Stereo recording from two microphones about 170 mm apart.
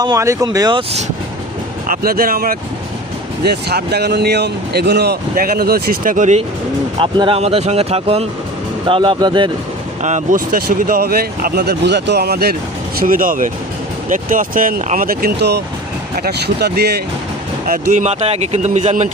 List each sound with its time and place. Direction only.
0.0 s speech: 20° right (ahead or behind)
1.9 s speech: 60° right (ahead or behind)
3.4 s speech: 70° right (ahead or behind); by 6.4 s 45° right (ahead or behind)
7.0 s speech: 30° right (ahead or behind)
10.0 s speech: 45° right (ahead or behind); by 12.5 s 70° right (ahead or behind)
13.0 s speech: 55° right (ahead or behind); by 17.0 s 70° right (ahead or behind)
17.7 s speech: 45° right (ahead or behind)